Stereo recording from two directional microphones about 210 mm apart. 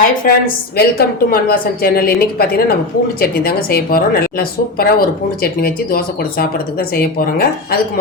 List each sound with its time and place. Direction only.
0.0 s a woman's voice: 45° left (ahead or behind)